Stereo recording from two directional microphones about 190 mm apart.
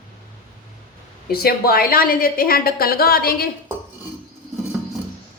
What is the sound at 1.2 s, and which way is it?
A woman's voice, 50° left (ahead or behind).